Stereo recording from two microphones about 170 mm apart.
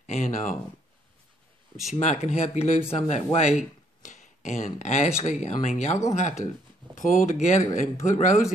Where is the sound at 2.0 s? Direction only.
40° left (ahead or behind).